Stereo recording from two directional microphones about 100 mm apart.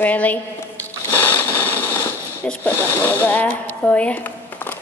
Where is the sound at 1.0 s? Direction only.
20° left (ahead or behind).